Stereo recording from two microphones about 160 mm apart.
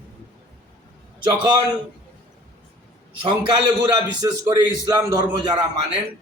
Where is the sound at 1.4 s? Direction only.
30° right (ahead or behind).